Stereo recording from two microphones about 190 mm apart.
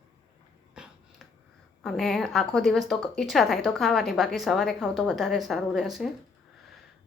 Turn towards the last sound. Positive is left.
turn(degrees=0)  # may be behind; listen again after turning